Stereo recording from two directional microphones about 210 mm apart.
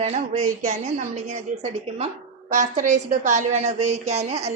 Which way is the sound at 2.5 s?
35° right (ahead or behind).